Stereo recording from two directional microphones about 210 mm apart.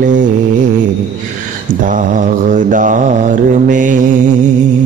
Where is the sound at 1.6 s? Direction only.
40° right (ahead or behind).